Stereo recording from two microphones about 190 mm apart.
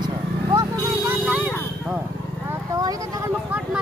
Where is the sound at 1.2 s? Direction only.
Centre (ahead or behind).